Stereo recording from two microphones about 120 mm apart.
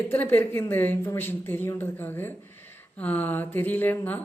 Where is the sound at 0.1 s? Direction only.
15° left (ahead or behind).